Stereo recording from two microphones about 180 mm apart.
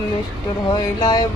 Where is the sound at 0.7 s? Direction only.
25° left (ahead or behind).